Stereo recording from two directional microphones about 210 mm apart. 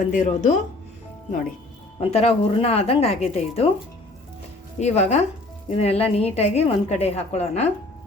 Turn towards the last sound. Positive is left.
turn(degrees=30)  # may be behind; listen again after turning